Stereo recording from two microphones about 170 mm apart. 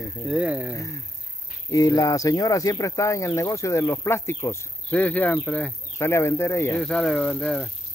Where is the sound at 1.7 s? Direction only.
20° left (ahead or behind).